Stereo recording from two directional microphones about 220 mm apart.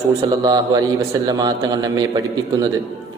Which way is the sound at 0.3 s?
20° right (ahead or behind).